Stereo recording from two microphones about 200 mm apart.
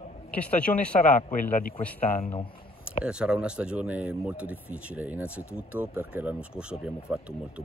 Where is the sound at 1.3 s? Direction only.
45° left (ahead or behind).